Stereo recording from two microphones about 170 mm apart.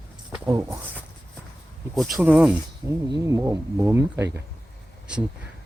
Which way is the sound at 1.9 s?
Centre (ahead or behind).